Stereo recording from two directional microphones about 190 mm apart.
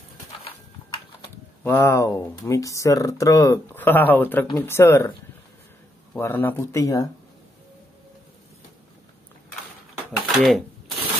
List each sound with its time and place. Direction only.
1.6 s speech: 15° left (ahead or behind)
6.1 s speech: 10° left (ahead or behind)
10.3 s speech: centre (ahead or behind)